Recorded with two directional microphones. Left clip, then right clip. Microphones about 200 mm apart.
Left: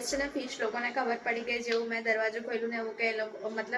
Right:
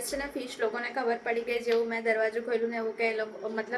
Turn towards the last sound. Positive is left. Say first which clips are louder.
# right 2 dB
turn(degrees=-5)  # may be behind; listen again after turning